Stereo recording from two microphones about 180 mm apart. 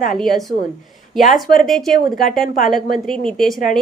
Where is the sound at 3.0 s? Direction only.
Centre (ahead or behind).